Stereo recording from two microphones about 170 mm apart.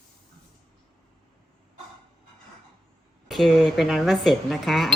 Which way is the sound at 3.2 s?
Centre (ahead or behind).